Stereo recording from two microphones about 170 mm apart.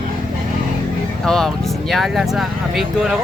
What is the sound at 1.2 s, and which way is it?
Speech, 5° left (ahead or behind).